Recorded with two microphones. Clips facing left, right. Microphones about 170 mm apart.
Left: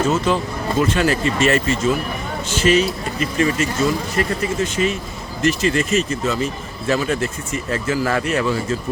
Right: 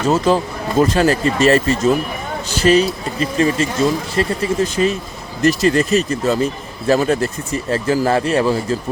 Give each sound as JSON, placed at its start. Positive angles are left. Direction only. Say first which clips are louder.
{"t": 0.3, "sound": "speech", "louder": "right 3 dB", "side_deg": -35}